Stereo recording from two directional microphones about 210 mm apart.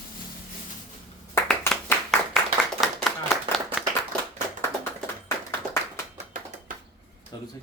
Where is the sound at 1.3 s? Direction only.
10° left (ahead or behind).